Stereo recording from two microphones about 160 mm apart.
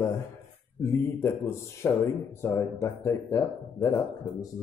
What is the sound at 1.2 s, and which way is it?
Speech, 15° left (ahead or behind).